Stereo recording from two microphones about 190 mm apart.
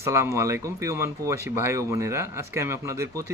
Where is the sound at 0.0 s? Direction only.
15° right (ahead or behind).